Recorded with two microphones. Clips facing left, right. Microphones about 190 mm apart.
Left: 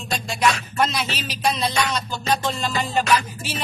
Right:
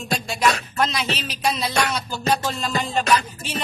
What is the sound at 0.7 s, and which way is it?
Music, centre (ahead or behind).